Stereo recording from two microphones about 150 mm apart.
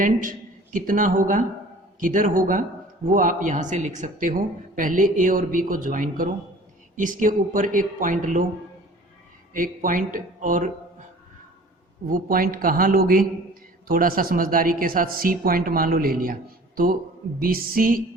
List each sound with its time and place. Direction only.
0.0 s speech: 65° right (ahead or behind)
9.5 s speech: 65° right (ahead or behind)
12.0 s a man's voice: 75° right (ahead or behind)